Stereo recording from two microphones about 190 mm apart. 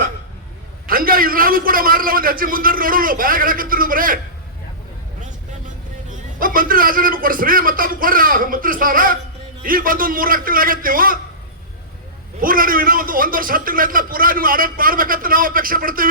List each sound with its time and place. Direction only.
0.9 s a man's voice: 50° right (ahead or behind)
6.4 s a man's voice: 45° right (ahead or behind)
12.4 s a man's voice: 45° right (ahead or behind)